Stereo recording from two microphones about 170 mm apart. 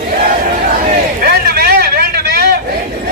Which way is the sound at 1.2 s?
65° right (ahead or behind).